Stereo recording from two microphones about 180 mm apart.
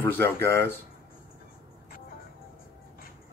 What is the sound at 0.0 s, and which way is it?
Speech, 15° left (ahead or behind).